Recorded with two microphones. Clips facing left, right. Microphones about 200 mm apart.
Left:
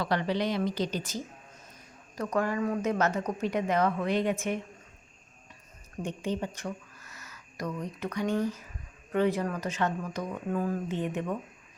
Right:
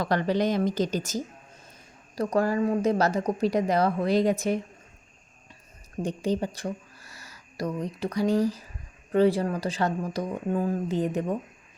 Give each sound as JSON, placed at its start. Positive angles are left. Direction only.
{"t": 0.0, "sound": "a woman's voice", "side_deg": -45}
{"t": 6.0, "sound": "speech", "side_deg": -35}